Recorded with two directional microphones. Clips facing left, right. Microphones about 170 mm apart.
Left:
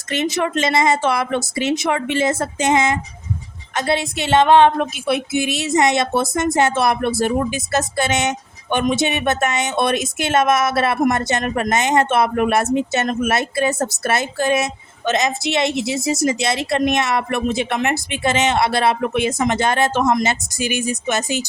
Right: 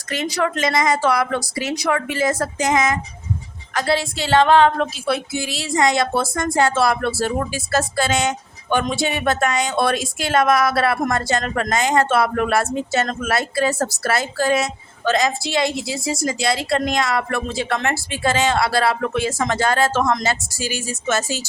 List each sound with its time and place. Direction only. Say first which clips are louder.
0.1 s speech: left 2 dB; 25° left (ahead or behind)